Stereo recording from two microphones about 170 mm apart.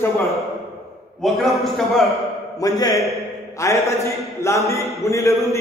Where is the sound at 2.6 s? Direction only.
20° left (ahead or behind).